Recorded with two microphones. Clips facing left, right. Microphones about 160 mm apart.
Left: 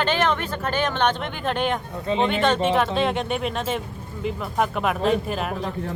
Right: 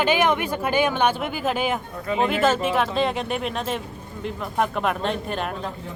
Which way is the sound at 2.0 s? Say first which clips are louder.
Left 1 dB; 25° left (ahead or behind).